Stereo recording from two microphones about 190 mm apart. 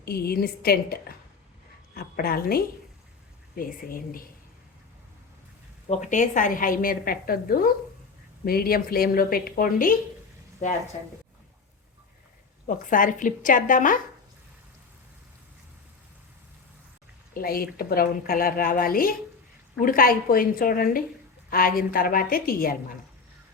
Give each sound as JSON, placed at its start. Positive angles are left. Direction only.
{"t": 0.0, "sound": "a woman's voice", "side_deg": 55}
{"t": 5.9, "sound": "a woman's voice", "side_deg": 40}
{"t": 12.6, "sound": "a woman's voice", "side_deg": 45}
{"t": 17.3, "sound": "a woman's voice", "side_deg": 50}